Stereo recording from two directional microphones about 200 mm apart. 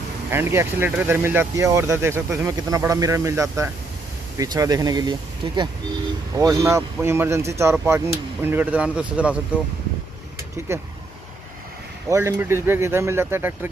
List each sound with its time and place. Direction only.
0.3 s speech: 10° right (ahead or behind)
10.7 s speech: 15° right (ahead or behind)
12.1 s speech: 15° right (ahead or behind)